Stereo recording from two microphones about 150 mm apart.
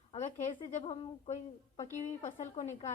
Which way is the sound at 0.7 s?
35° left (ahead or behind).